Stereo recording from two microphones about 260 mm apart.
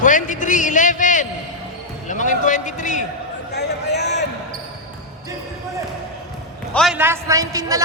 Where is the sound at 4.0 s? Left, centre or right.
Left.